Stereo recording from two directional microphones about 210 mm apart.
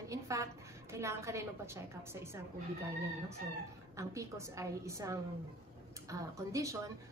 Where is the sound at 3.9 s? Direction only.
15° right (ahead or behind).